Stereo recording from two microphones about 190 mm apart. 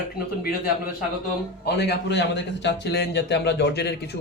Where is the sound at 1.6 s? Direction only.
60° left (ahead or behind).